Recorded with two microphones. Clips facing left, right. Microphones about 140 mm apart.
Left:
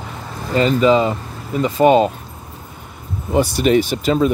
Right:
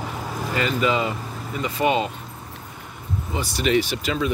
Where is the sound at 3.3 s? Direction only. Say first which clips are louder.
Left 8 dB; 50° left (ahead or behind).